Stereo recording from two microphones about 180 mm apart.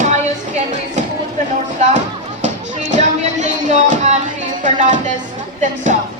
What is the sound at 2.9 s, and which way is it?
Music, 40° right (ahead or behind).